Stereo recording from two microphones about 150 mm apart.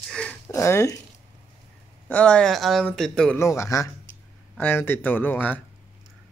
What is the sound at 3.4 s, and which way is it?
A man's voice, 20° left (ahead or behind).